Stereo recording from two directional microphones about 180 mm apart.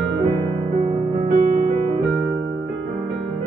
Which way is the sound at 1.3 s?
40° right (ahead or behind).